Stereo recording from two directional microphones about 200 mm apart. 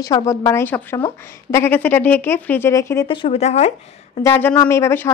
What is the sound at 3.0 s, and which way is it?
Speech, 25° left (ahead or behind).